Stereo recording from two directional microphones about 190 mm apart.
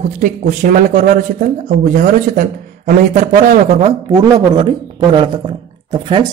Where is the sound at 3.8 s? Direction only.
20° right (ahead or behind).